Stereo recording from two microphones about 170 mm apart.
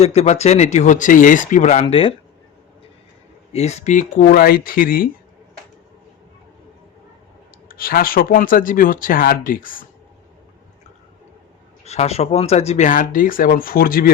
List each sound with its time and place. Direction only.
0.0 s speech: 40° left (ahead or behind)
1.8 s speech: 35° left (ahead or behind)
3.5 s speech: 40° left (ahead or behind); by 5.0 s 60° left (ahead or behind)
7.7 s speech: 60° left (ahead or behind)
11.9 s speech: 40° left (ahead or behind); by 14.1 s 60° left (ahead or behind)